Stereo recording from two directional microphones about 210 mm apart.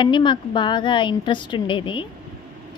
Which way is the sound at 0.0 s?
20° left (ahead or behind).